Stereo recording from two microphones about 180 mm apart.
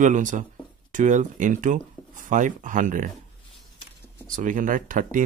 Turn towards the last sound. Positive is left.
turn(degrees=-45)  # may be behind; listen again after turning